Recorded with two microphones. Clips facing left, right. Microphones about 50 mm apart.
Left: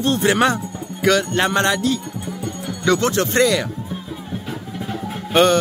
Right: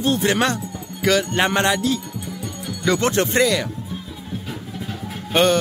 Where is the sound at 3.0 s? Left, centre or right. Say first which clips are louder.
Even; right.